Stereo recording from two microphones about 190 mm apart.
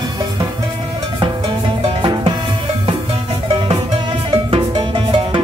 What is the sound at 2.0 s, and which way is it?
Drum, 25° right (ahead or behind).